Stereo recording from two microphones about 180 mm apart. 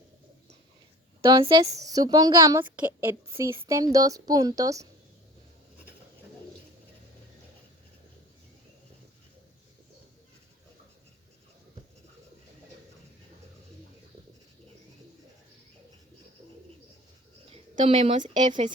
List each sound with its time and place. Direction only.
1.3 s a woman's voice: 25° right (ahead or behind)
17.8 s a woman's voice: 35° right (ahead or behind)